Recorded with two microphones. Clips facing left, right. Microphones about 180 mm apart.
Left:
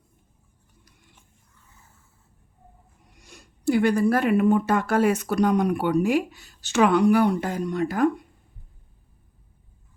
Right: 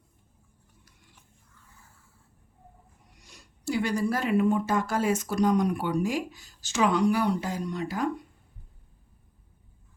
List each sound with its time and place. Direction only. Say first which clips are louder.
3.2 s speech: left 8 dB; 50° left (ahead or behind)